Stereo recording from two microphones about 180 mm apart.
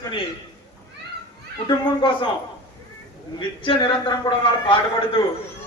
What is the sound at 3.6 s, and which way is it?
A man's voice, 25° left (ahead or behind).